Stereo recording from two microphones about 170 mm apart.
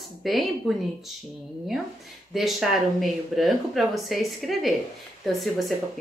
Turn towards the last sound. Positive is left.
turn(degrees=0)  # may be behind; listen again after turning